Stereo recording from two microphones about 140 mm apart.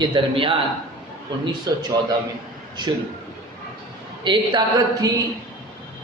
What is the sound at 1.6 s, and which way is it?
A man's voice, 30° right (ahead or behind).